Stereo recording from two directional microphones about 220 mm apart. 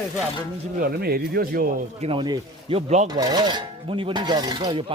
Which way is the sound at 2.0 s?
25° right (ahead or behind).